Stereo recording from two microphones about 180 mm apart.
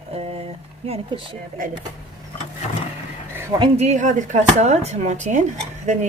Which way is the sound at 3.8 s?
40° right (ahead or behind).